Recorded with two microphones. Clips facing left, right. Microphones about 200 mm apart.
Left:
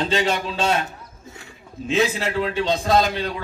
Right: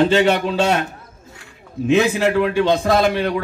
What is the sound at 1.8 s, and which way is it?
A man's voice, 65° right (ahead or behind).